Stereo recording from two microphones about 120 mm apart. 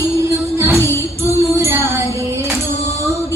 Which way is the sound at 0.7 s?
20° left (ahead or behind).